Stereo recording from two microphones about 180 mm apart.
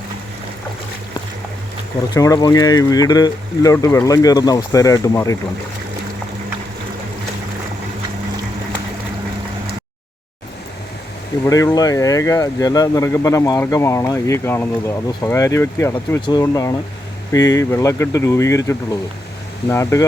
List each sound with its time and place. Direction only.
2.1 s speech: 20° left (ahead or behind)
11.4 s speech: 20° left (ahead or behind)